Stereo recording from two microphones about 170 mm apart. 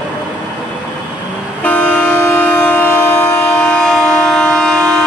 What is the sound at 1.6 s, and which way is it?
Vehicle, 10° left (ahead or behind).